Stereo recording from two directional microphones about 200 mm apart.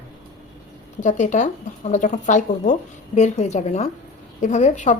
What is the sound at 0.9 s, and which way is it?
A woman's voice, 40° left (ahead or behind).